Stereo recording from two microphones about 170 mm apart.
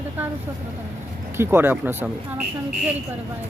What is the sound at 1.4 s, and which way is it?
Speech, 15° right (ahead or behind).